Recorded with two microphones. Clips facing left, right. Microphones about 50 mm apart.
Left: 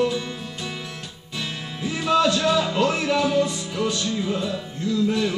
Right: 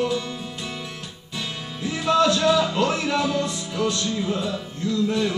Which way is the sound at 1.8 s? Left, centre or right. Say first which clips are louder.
Right 1 dB; centre.